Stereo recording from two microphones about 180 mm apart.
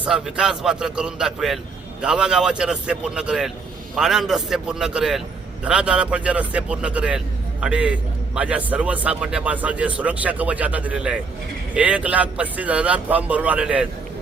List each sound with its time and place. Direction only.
0.0 s a man's voice: 5° right (ahead or behind)